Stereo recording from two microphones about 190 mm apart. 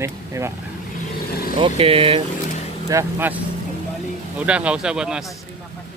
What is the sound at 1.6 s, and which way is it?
Speech, 30° right (ahead or behind).